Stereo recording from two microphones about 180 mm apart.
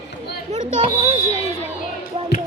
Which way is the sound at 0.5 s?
35° right (ahead or behind).